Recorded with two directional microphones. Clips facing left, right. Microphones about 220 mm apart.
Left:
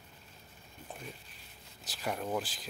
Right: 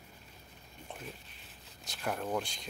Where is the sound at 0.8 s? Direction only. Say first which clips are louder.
Even; centre (ahead or behind).